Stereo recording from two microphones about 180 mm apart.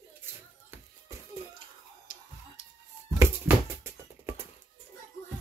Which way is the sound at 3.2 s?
15° right (ahead or behind).